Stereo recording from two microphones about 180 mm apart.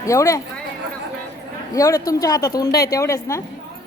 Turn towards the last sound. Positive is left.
turn(degrees=15)  # may be behind; listen again after turning